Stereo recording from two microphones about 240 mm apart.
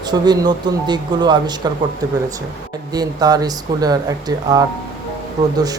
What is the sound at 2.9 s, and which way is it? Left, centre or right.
Speech, centre.